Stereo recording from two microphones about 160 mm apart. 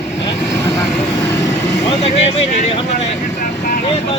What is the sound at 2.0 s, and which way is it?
Speech, 40° left (ahead or behind).